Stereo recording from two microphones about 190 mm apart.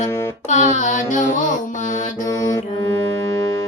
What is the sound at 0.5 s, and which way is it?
Music, 40° left (ahead or behind).